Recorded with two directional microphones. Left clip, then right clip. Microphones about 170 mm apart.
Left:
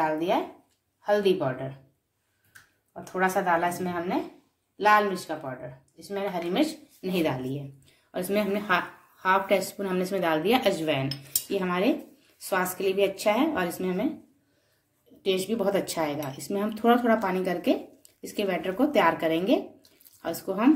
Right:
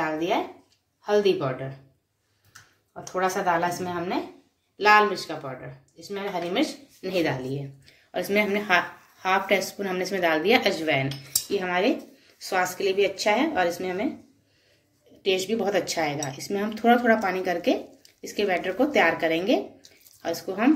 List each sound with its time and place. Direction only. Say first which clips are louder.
0.0 s a sound: even; 50° left (ahead or behind)
1.0 s speech: right 2 dB; 50° left (ahead or behind)
2.9 s speech: even; 45° left (ahead or behind)
5.9 s speech: even; 50° left (ahead or behind)
15.2 s speech: right 2 dB; 45° left (ahead or behind)